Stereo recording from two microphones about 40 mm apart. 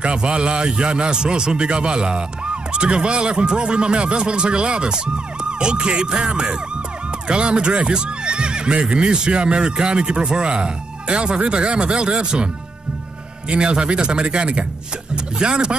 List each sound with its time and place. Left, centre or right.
0.0 s a man's voice: right
13.5 s a man's voice: right